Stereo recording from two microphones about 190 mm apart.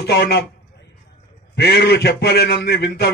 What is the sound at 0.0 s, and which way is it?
Speech, 60° left (ahead or behind).